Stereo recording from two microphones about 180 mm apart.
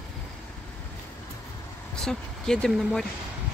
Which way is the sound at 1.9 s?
5° left (ahead or behind).